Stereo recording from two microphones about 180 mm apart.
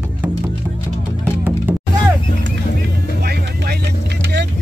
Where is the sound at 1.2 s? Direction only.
10° right (ahead or behind).